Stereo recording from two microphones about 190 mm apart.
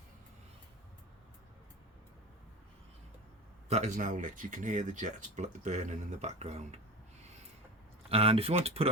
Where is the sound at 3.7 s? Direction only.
40° right (ahead or behind).